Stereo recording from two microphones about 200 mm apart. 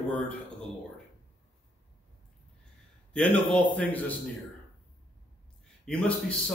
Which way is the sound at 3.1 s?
5° left (ahead or behind).